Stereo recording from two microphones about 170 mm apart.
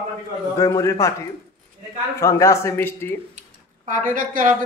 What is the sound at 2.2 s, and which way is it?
A man's voice, 20° left (ahead or behind).